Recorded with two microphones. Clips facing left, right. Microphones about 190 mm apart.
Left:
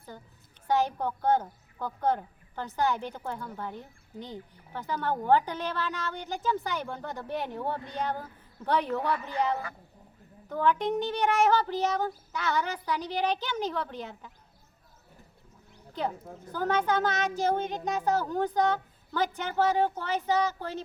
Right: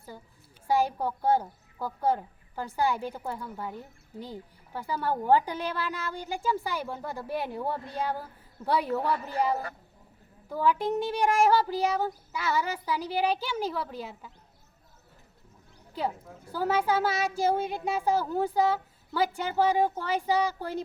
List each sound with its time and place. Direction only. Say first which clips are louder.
0.1 s a woman's voice: right 1 dB; 5° right (ahead or behind)
9.1 s a woman's voice: right 1 dB; 35° right (ahead or behind)
10.5 s a woman's voice: even; 5° right (ahead or behind)
15.9 s a woman's voice: even; 5° right (ahead or behind)